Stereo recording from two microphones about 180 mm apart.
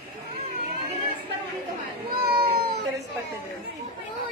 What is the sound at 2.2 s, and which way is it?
Cat, 60° right (ahead or behind).